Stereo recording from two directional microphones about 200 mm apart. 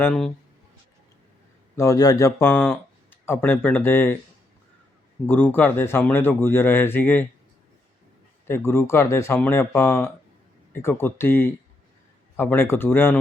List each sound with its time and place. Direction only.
0.0 s a man's voice: 5° left (ahead or behind)
1.7 s speech: 15° left (ahead or behind)
5.2 s speech: 10° left (ahead or behind)
8.4 s speech: 10° left (ahead or behind)